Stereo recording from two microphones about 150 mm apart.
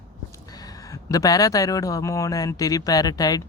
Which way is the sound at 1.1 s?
25° left (ahead or behind).